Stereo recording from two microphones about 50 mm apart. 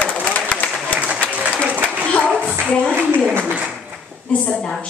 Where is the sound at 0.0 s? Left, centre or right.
Left.